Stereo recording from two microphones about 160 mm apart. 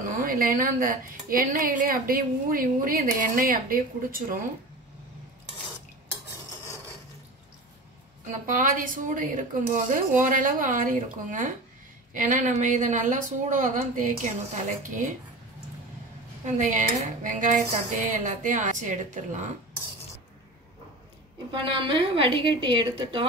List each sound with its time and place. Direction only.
0.0 s a woman's voice: 55° right (ahead or behind)
8.3 s a woman's voice: 55° right (ahead or behind)
16.5 s speech: 50° right (ahead or behind)
21.5 s a woman's voice: 35° right (ahead or behind)